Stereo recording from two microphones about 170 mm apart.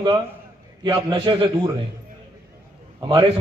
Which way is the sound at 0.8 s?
30° right (ahead or behind).